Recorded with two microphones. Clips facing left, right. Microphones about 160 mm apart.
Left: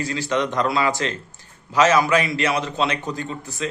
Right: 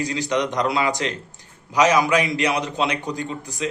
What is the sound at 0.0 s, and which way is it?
A man's voice, 15° right (ahead or behind).